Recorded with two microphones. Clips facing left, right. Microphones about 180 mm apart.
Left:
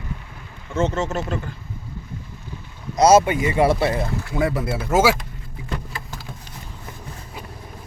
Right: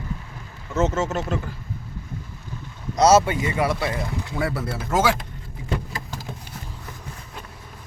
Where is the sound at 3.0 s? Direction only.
10° left (ahead or behind); by 4.0 s 30° left (ahead or behind).